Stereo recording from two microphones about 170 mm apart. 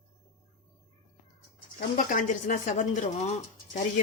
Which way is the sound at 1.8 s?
50° left (ahead or behind).